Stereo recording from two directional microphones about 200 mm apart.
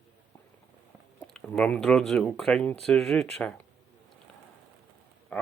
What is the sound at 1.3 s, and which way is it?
Speech, 5° left (ahead or behind).